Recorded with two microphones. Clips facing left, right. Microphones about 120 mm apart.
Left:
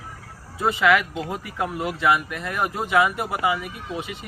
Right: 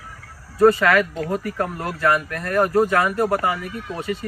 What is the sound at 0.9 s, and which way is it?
Speech, 15° left (ahead or behind).